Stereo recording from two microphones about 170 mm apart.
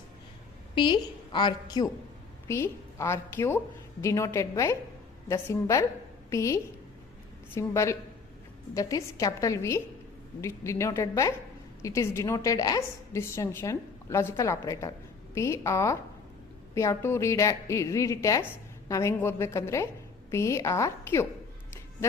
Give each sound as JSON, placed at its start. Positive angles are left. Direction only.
{"t": 0.8, "sound": "a woman's voice", "side_deg": 30}